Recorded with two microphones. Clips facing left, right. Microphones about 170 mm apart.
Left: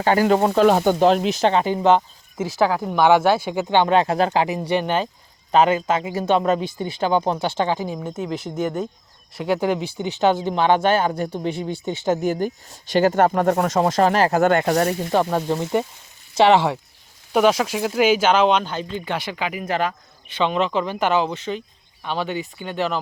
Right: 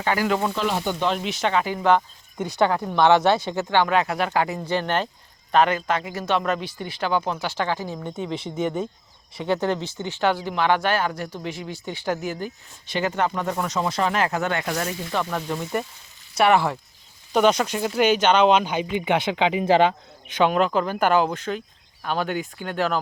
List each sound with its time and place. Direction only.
0.0 s speech: 35° left (ahead or behind)
2.4 s speech: 5° left (ahead or behind); by 4.4 s 30° left (ahead or behind)
4.4 s speech: 15° left (ahead or behind)
7.9 s speech: 5° left (ahead or behind); by 12.3 s 20° left (ahead or behind)
12.9 s speech: 45° left (ahead or behind); by 16.7 s 20° left (ahead or behind)
17.3 s speech: 5° left (ahead or behind)
18.6 s speech: 15° right (ahead or behind); by 20.0 s 30° right (ahead or behind)
20.3 s speech: 5° right (ahead or behind)